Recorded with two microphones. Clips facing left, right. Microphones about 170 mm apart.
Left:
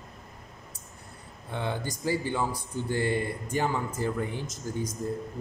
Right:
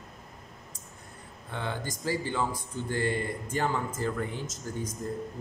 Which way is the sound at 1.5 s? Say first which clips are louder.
Left 3 dB; 15° left (ahead or behind).